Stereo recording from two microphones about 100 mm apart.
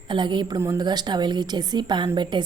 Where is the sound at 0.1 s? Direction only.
50° right (ahead or behind).